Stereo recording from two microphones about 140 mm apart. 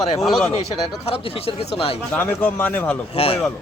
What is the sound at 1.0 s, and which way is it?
Speech, 45° left (ahead or behind).